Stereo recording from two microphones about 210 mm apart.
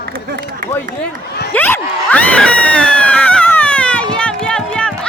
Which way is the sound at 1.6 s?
10° left (ahead or behind).